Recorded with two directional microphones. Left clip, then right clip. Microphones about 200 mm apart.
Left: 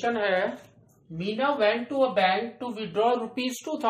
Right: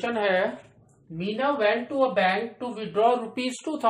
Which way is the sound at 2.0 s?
15° right (ahead or behind).